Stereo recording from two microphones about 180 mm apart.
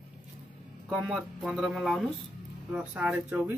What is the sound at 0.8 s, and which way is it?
Speech, centre (ahead or behind).